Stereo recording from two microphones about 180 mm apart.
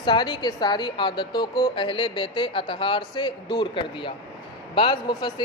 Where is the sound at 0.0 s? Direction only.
25° left (ahead or behind).